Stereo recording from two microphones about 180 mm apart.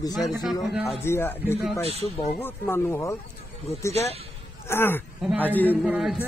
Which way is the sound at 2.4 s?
10° left (ahead or behind).